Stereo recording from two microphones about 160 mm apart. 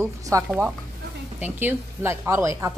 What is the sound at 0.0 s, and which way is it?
A woman's voice, 15° right (ahead or behind).